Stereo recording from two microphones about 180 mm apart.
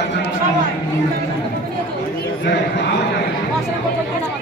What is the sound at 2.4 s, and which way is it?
Speech, 70° left (ahead or behind).